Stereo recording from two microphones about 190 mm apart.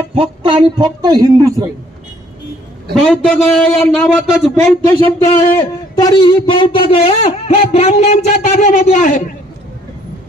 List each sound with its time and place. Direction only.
0.1 s speech: 30° right (ahead or behind)
2.9 s a man's voice: centre (ahead or behind)
4.9 s speech: 20° left (ahead or behind); by 9.2 s 45° left (ahead or behind)